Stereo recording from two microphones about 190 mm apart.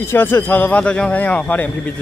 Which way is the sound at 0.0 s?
10° left (ahead or behind).